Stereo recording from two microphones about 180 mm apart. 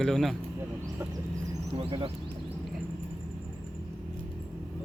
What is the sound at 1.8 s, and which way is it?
Speech, 30° right (ahead or behind).